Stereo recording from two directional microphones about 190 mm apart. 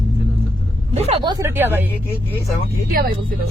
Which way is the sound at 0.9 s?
30° right (ahead or behind).